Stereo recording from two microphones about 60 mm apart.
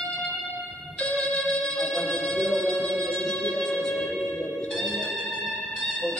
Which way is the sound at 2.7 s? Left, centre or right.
Right.